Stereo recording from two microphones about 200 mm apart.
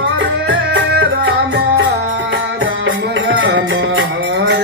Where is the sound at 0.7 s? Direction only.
65° right (ahead or behind).